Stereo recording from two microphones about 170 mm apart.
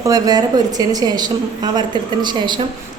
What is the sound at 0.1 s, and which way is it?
A woman's voice, 20° right (ahead or behind).